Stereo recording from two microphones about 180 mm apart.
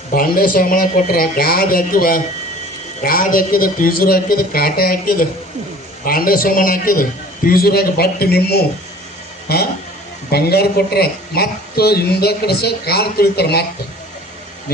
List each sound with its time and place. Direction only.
0.1 s a man's voice: 50° left (ahead or behind)